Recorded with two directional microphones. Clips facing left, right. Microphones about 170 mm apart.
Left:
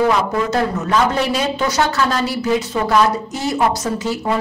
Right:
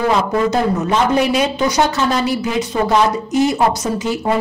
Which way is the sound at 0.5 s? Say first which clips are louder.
Right 2 dB; 15° right (ahead or behind).